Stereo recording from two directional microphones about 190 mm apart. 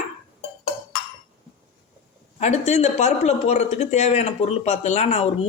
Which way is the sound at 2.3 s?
35° left (ahead or behind).